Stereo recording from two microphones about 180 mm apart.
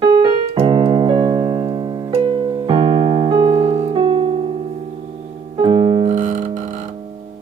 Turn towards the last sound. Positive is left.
turn(degrees=-30)  # may be behind; listen again after turning